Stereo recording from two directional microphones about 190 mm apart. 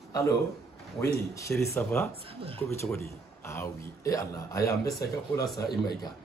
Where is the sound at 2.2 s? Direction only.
30° right (ahead or behind).